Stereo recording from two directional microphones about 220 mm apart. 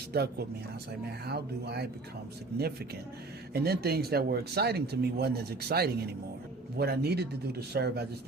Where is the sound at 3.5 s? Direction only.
45° right (ahead or behind).